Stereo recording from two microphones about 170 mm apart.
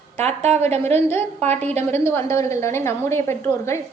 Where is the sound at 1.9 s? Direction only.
15° left (ahead or behind).